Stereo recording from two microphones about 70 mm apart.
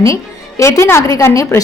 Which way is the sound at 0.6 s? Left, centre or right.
Left.